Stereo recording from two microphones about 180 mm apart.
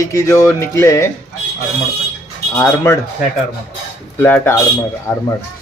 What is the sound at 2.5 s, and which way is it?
Speech, 15° left (ahead or behind).